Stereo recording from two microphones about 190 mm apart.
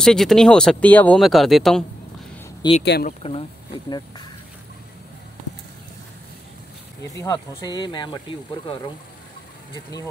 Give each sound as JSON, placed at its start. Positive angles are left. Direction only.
{"t": 0.0, "sound": "speech", "side_deg": 0}
{"t": 2.8, "sound": "speech", "side_deg": 65}
{"t": 3.1, "sound": "speech", "side_deg": 30}
{"t": 7.2, "sound": "speech", "side_deg": 20}